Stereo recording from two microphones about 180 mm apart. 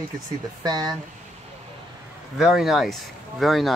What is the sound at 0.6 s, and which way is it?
Speech, 20° right (ahead or behind).